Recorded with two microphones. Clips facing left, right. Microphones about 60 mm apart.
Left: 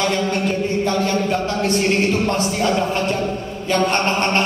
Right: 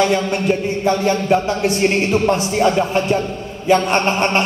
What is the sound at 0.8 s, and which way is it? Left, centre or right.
A man's voice, centre.